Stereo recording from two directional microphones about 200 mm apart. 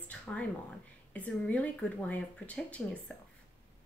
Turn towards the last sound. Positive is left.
turn(degrees=10)  # may be behind; listen again after turning